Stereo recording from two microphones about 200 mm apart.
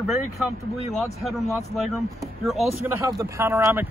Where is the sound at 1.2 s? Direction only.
Centre (ahead or behind).